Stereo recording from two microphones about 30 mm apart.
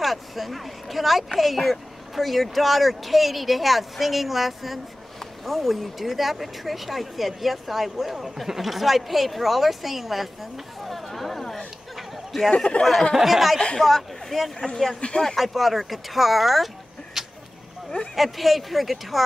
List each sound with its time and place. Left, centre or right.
0.0 s speech: centre
10.8 s a sound: centre
12.7 s speech: left
13.1 s speech: centre
13.7 s speech: centre
15.0 s speech: left
15.3 s speech: centre